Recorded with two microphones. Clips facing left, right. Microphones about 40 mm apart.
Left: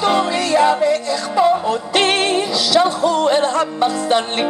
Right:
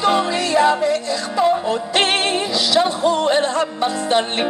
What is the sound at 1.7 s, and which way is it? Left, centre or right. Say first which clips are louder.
Music: left 1 dB; right.